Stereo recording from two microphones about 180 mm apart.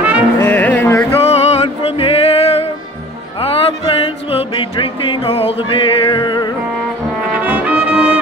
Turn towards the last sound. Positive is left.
turn(degrees=25)  # may be behind; listen again after turning